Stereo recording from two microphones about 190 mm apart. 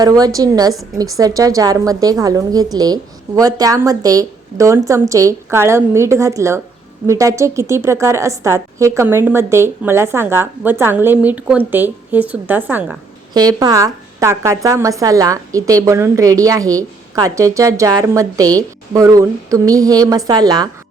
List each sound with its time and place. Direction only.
0.0 s a woman's voice: 20° right (ahead or behind)